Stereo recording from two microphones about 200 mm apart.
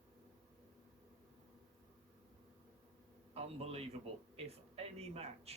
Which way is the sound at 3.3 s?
30° right (ahead or behind).